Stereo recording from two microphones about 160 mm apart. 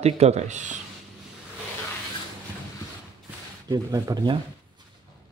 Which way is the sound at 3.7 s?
20° right (ahead or behind).